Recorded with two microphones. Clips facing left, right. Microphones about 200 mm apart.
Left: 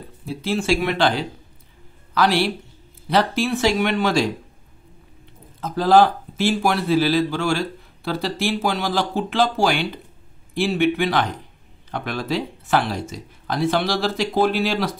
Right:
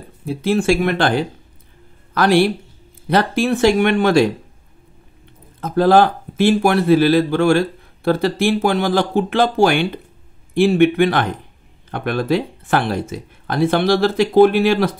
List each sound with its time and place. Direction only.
0.2 s speech: 55° right (ahead or behind)
5.6 s speech: 55° right (ahead or behind)